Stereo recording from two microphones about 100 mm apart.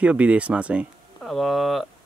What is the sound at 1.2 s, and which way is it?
Speech, centre (ahead or behind).